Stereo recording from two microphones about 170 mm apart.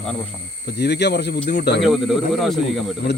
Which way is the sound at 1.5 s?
90° left.